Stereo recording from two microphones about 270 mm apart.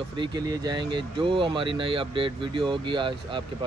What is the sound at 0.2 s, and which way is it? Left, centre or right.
Speech, centre.